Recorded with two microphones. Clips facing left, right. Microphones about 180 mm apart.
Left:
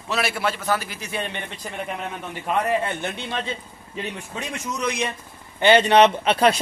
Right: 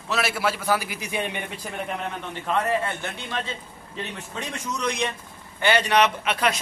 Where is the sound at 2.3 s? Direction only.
15° left (ahead or behind).